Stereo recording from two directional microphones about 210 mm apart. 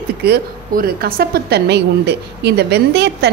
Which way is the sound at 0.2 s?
45° right (ahead or behind).